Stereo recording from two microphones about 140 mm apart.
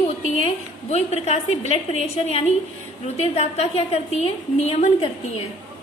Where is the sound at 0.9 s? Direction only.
50° left (ahead or behind).